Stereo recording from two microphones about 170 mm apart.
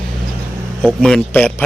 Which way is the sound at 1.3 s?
10° left (ahead or behind).